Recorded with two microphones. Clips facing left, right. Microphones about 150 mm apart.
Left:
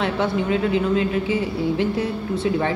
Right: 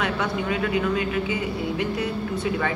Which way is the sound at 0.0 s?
30° left (ahead or behind).